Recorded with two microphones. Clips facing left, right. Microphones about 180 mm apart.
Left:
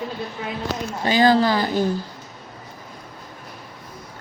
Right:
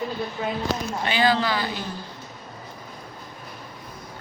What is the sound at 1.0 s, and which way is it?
Speech, 40° left (ahead or behind).